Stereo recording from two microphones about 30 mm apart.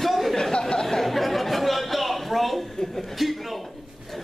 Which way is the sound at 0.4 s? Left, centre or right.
Left.